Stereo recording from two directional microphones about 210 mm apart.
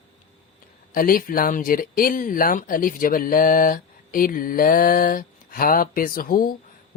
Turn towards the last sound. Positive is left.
turn(degrees=40)  # may be behind; listen again after turning